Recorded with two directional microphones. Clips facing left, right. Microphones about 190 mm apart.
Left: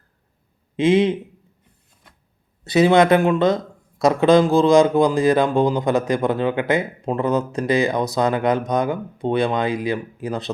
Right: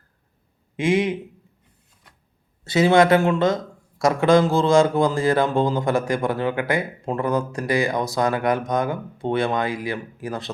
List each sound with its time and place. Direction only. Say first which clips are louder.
0.8 s speech: left 4 dB; 20° left (ahead or behind)
2.6 s speech: left 2 dB; 20° left (ahead or behind)